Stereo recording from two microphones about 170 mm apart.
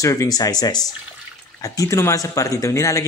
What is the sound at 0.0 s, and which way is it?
A man's voice, 20° left (ahead or behind).